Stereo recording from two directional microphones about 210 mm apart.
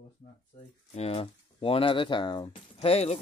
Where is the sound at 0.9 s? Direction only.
30° left (ahead or behind).